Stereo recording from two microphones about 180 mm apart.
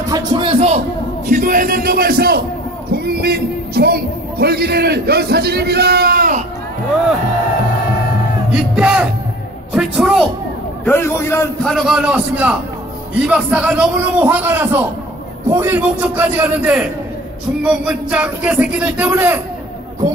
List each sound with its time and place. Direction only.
0.1 s speech: 30° right (ahead or behind)
1.3 s speech: 50° right (ahead or behind)
8.5 s music: 5° right (ahead or behind)
9.7 s a sound: 5° right (ahead or behind)
10.9 s a man's voice: 15° left (ahead or behind)
11.6 s a man's voice: centre (ahead or behind)